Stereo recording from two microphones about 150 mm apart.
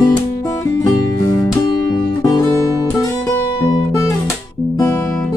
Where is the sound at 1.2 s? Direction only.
25° left (ahead or behind).